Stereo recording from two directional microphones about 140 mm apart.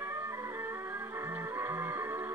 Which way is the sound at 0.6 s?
20° right (ahead or behind).